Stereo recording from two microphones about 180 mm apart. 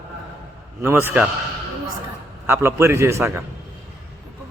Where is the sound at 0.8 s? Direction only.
10° right (ahead or behind).